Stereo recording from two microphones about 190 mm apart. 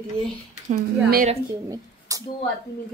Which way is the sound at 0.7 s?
50° right (ahead or behind).